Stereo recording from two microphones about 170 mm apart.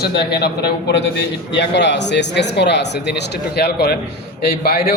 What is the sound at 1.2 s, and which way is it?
A man's voice, 90° left.